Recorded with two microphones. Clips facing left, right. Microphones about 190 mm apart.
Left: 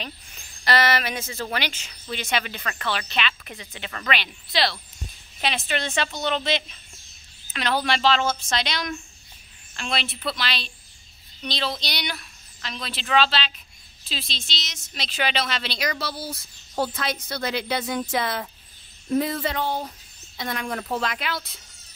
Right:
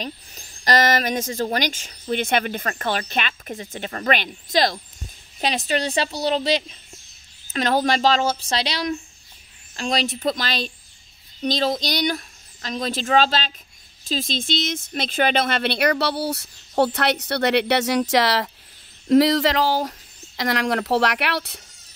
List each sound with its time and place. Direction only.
0.0 s speech: 40° right (ahead or behind); by 21.5 s 70° right (ahead or behind)